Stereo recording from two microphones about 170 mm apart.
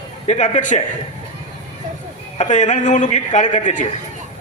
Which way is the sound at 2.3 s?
45° left (ahead or behind).